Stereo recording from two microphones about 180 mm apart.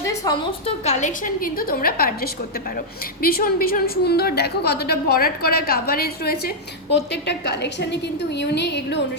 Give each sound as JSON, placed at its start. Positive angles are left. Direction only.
{"t": 0.0, "sound": "a sound", "side_deg": 20}
{"t": 0.6, "sound": "a woman's voice", "side_deg": 40}
{"t": 6.9, "sound": "a woman's voice", "side_deg": 70}